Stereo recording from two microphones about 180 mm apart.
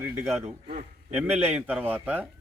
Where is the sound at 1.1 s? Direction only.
10° right (ahead or behind).